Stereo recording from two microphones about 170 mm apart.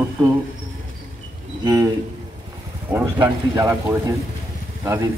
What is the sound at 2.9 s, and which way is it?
Speech, 15° right (ahead or behind).